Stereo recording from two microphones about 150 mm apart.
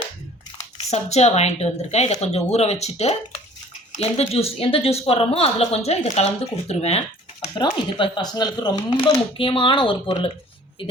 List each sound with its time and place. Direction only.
0.8 s speech: 45° left (ahead or behind)
7.6 s speech: 30° left (ahead or behind)